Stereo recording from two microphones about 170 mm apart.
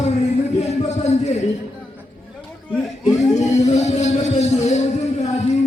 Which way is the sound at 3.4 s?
40° left (ahead or behind).